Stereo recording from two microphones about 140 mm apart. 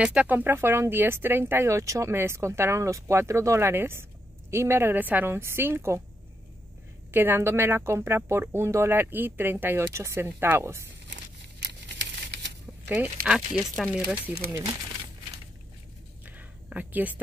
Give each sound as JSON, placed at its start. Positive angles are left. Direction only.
{"t": 0.0, "sound": "speech", "side_deg": -10}
{"t": 7.1, "sound": "speech", "side_deg": -15}
{"t": 12.8, "sound": "speech", "side_deg": -10}
{"t": 16.3, "sound": "a sound", "side_deg": -10}